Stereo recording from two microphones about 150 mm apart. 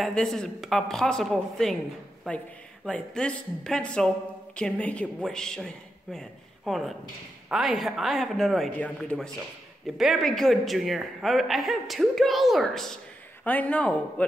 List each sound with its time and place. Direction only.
0.0 s a man's voice: centre (ahead or behind)